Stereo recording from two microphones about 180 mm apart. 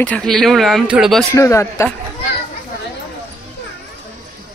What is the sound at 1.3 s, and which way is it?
Speech, 15° left (ahead or behind).